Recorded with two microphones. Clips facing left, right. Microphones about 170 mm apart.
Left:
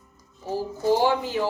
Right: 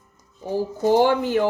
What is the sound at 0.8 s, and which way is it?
Speech, 55° right (ahead or behind).